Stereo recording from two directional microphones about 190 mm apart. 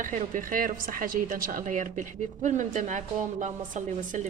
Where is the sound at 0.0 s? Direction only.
45° right (ahead or behind).